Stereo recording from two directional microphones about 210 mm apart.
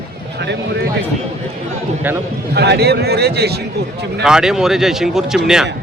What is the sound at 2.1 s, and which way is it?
Speech, 10° right (ahead or behind).